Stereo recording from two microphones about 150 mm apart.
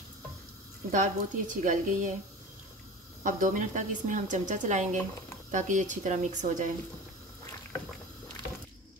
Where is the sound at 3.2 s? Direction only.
60° right (ahead or behind).